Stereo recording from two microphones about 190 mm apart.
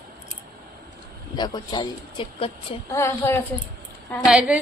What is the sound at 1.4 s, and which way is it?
Speech, 20° left (ahead or behind).